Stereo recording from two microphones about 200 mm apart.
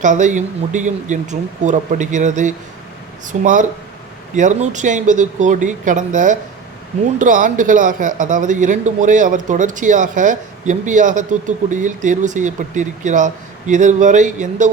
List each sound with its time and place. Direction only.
0.0 s speech: 40° right (ahead or behind)